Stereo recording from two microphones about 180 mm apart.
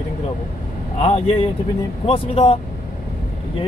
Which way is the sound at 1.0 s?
30° left (ahead or behind).